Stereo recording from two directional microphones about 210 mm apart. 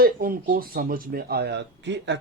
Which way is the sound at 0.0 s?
45° right (ahead or behind).